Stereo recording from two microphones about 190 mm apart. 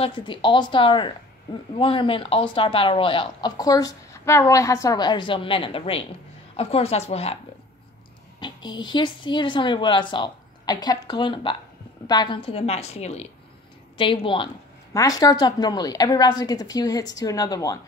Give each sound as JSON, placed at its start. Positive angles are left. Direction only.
{"t": 0.0, "sound": "a woman's voice", "side_deg": 25}
{"t": 8.4, "sound": "a woman's voice", "side_deg": 25}